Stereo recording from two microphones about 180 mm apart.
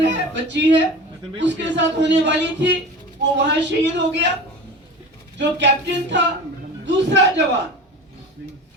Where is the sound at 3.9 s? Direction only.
75° right (ahead or behind).